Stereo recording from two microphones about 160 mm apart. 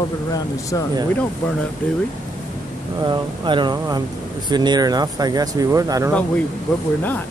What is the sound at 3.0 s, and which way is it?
Speech, 30° right (ahead or behind).